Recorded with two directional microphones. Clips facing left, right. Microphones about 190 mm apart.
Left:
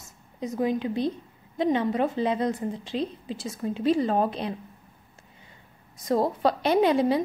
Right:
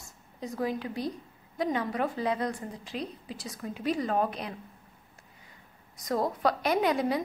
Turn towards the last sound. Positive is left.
turn(degrees=30)  # may be behind; listen again after turning